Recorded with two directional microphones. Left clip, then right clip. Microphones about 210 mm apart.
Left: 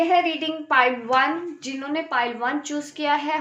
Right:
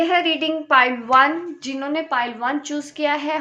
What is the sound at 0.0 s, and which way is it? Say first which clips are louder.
A woman's voice: right 1 dB; 40° right (ahead or behind).